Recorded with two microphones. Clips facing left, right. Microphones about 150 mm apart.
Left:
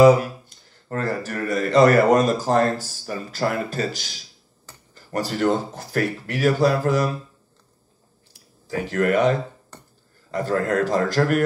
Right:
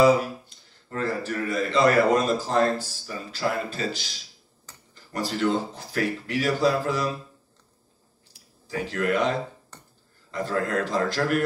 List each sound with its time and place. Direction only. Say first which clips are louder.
0.8 s a man's voice: left 2 dB; 50° left (ahead or behind)
8.6 s a man's voice: left 4 dB; 50° left (ahead or behind)
10.3 s a man's voice: left 4 dB; 45° left (ahead or behind)